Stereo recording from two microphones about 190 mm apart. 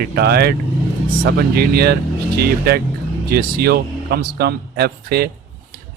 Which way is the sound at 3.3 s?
55° right (ahead or behind).